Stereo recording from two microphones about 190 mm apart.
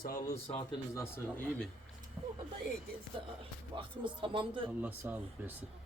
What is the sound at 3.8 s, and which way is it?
Speech, 25° right (ahead or behind).